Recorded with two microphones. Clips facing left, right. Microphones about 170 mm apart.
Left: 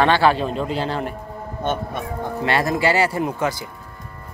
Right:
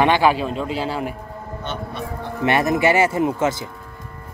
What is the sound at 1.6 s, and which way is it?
Speech, 50° left (ahead or behind).